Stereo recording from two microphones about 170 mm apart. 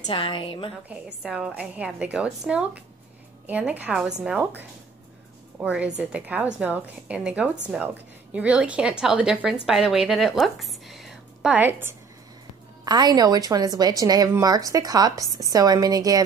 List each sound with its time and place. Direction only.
0.0 s a woman's voice: 30° left (ahead or behind)
0.8 s a woman's voice: 5° right (ahead or behind)
5.6 s a woman's voice: 5° right (ahead or behind)
12.8 s a woman's voice: 25° right (ahead or behind)